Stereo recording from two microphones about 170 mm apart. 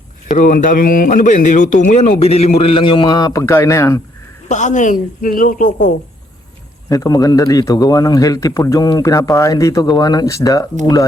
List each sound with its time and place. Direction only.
0.3 s a man's voice: 50° left (ahead or behind); by 4.0 s 15° left (ahead or behind)
4.4 s speech: 45° left (ahead or behind)
6.9 s a man's voice: 20° left (ahead or behind)